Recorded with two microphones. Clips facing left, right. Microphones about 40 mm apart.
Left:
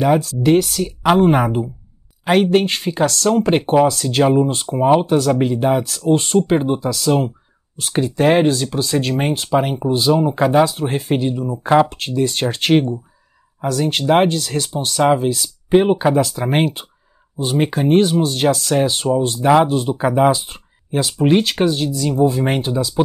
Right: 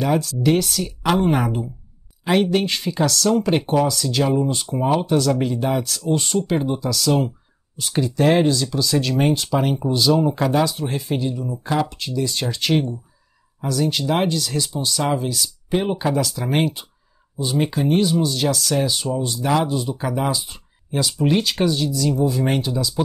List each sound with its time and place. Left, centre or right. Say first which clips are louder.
0.0 s speech: left 4 dB; centre
3.9 s speech: left 5 dB; left; by 6.0 s centre
6.0 s speech: left 7 dB; left
6.9 s speech: left 1 dB; centre
7.9 s speech: left 3 dB; left
10.7 s speech: left 5 dB; left
15.0 s speech: left 7 dB; left
19.4 s speech: left 7 dB; left
21.0 s speech: left 4 dB; left